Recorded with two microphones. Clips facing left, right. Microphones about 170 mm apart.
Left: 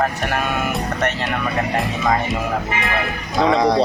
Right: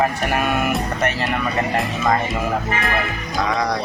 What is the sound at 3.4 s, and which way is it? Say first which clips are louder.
Speech: left 7 dB; 25° left (ahead or behind).